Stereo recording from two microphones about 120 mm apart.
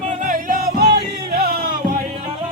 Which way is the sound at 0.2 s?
90° right.